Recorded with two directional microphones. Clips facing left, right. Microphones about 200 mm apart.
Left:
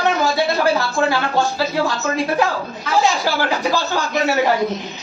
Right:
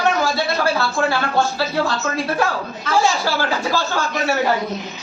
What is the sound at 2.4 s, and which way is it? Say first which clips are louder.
Speech: left 2 dB; 15° left (ahead or behind).